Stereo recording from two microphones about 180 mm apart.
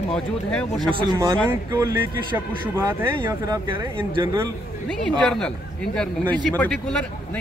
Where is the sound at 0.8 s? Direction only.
25° right (ahead or behind).